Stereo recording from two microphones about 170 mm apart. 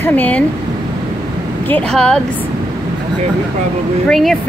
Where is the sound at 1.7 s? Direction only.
5° left (ahead or behind).